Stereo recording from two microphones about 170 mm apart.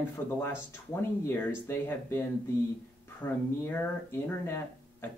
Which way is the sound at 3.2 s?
15° left (ahead or behind).